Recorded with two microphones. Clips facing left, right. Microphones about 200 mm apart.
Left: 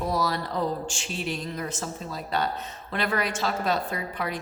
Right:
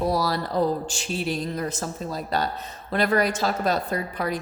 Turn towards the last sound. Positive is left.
turn(degrees=-40)  # may be behind; listen again after turning